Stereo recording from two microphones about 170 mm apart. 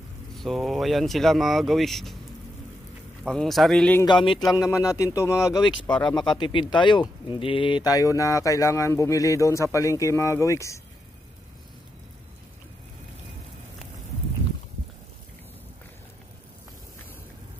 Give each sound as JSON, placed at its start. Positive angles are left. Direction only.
{"t": 0.4, "sound": "speech", "side_deg": 0}
{"t": 3.3, "sound": "speech", "side_deg": 0}
{"t": 4.0, "sound": "speech", "side_deg": 30}
{"t": 4.6, "sound": "speech", "side_deg": 20}
{"t": 5.9, "sound": "speech", "side_deg": 5}
{"t": 6.3, "sound": "speech", "side_deg": 25}